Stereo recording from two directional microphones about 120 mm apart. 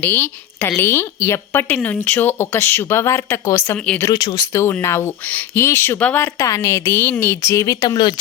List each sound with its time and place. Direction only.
0.0 s a woman's voice: 20° left (ahead or behind)
3.8 s speech: 10° left (ahead or behind)
4.2 s speech: 40° left (ahead or behind)
4.5 s speech: 20° left (ahead or behind)